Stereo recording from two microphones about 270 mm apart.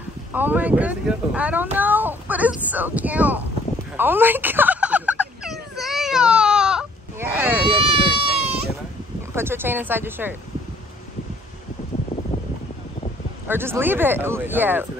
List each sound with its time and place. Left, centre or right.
0.3 s speech: centre
3.9 s a sound: centre
7.6 s run: right
9.3 s speech: centre
13.5 s speech: centre